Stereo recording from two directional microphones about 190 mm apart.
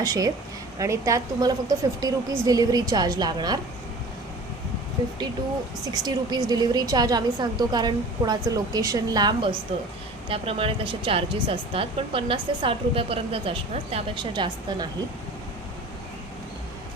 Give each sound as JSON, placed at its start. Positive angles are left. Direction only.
{"t": 0.0, "sound": "speech", "side_deg": -20}
{"t": 5.9, "sound": "speech", "side_deg": -20}